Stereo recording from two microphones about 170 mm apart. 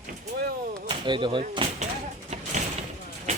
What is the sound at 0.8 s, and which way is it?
Speech, 25° right (ahead or behind).